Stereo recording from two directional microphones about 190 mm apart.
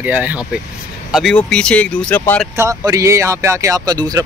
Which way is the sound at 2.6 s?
15° right (ahead or behind).